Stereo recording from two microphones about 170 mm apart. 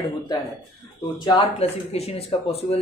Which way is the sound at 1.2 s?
35° left (ahead or behind).